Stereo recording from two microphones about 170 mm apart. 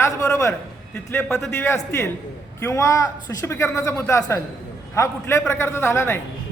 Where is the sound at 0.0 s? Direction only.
20° left (ahead or behind).